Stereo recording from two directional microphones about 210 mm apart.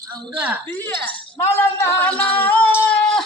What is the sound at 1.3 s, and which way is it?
Speech, 10° left (ahead or behind).